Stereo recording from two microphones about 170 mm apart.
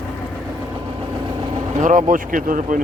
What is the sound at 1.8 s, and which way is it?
Speech, 50° right (ahead or behind).